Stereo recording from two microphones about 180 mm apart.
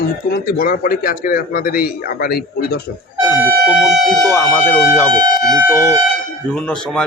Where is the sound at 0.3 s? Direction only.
55° left (ahead or behind).